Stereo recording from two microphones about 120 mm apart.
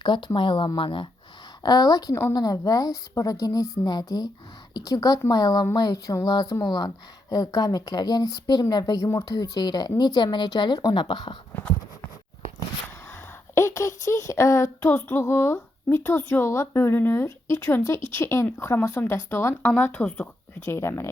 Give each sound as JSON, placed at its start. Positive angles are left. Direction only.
{"t": 0.0, "sound": "speech", "side_deg": 40}
{"t": 1.6, "sound": "speech", "side_deg": 35}
{"t": 13.6, "sound": "child singing", "side_deg": 25}
{"t": 20.7, "sound": "child singing", "side_deg": 20}